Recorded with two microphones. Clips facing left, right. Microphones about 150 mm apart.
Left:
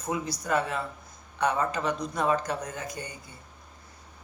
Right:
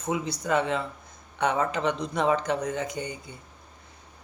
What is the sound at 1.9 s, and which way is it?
Speech, 25° right (ahead or behind).